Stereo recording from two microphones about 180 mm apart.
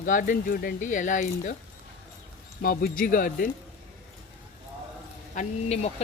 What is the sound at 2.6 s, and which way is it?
Speech, 55° left (ahead or behind).